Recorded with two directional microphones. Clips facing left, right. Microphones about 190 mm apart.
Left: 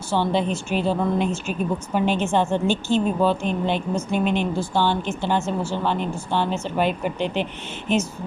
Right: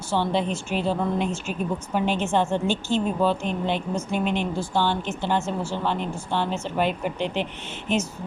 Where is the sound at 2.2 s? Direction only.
15° left (ahead or behind).